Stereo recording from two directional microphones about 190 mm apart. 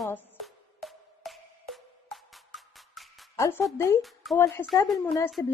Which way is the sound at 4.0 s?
Centre (ahead or behind).